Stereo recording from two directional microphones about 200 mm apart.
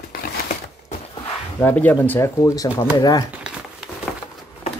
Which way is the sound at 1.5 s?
10° left (ahead or behind).